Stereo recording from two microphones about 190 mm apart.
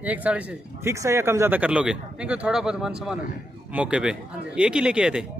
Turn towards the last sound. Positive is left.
turn(degrees=-5)  # may be behind; listen again after turning